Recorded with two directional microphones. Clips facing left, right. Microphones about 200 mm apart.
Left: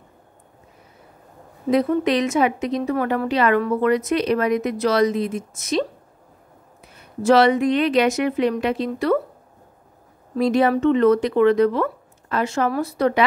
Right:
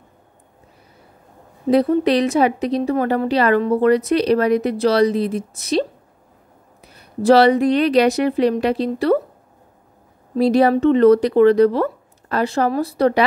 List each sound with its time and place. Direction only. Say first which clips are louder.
1.7 s a woman's voice: right 3 dB; 35° right (ahead or behind)
10.3 s a woman's voice: right 3 dB; 35° right (ahead or behind)